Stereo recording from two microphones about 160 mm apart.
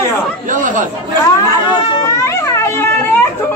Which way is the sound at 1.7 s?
20° left (ahead or behind).